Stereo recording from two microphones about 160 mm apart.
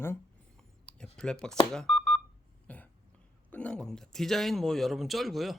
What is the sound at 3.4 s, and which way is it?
Speech, 10° left (ahead or behind).